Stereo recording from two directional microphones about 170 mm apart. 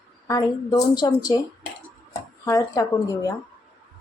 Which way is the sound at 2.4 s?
20° left (ahead or behind).